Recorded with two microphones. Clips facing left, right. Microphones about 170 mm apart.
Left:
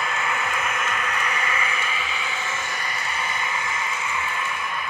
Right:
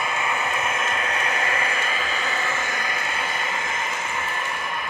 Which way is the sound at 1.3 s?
45° right (ahead or behind).